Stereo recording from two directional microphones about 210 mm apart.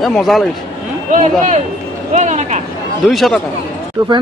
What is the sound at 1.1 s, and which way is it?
A man's voice, 35° right (ahead or behind).